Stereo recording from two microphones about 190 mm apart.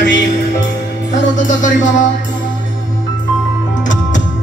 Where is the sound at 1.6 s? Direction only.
40° left (ahead or behind).